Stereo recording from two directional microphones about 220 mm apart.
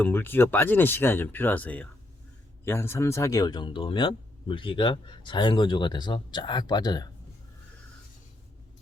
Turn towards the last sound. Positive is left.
turn(degrees=20)  # may be behind; listen again after turning